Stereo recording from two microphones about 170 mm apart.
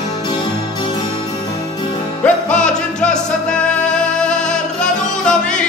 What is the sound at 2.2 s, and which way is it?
Music, 5° left (ahead or behind).